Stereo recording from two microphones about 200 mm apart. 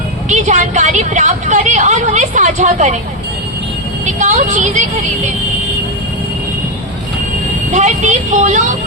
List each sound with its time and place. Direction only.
0.3 s a woman's voice: 40° right (ahead or behind)
4.0 s a woman's voice: 40° right (ahead or behind)
7.7 s speech: 35° right (ahead or behind)